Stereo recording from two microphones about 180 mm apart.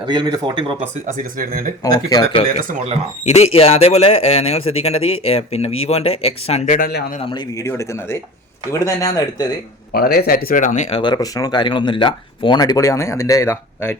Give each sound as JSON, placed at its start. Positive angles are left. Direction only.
{"t": 0.0, "sound": "speech", "side_deg": -25}
{"t": 0.8, "sound": "speech", "side_deg": -45}
{"t": 1.8, "sound": "speech", "side_deg": 20}
{"t": 3.2, "sound": "speech", "side_deg": 35}
{"t": 6.7, "sound": "a man's voice", "side_deg": 55}
{"t": 7.3, "sound": "speech", "side_deg": 20}
{"t": 9.9, "sound": "speech", "side_deg": 60}